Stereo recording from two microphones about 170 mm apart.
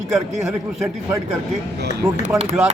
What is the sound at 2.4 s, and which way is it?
Speech, 40° right (ahead or behind).